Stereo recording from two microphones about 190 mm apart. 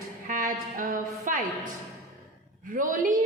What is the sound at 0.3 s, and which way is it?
A woman's voice, 45° right (ahead or behind).